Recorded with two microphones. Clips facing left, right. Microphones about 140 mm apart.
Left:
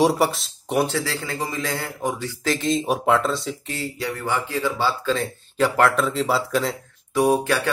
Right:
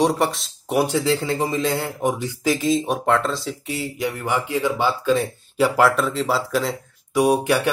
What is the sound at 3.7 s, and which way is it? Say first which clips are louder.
Speech: right 4 dB; 15° right (ahead or behind).